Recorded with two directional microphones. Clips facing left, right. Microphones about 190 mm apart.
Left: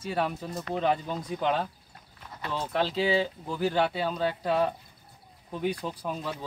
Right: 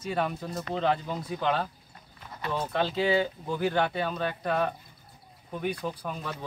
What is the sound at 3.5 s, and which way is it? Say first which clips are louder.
Speech: even; 5° left (ahead or behind).